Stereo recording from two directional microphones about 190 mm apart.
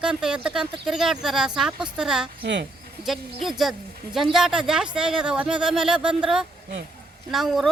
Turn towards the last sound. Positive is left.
turn(degrees=0)  # may be behind; listen again after turning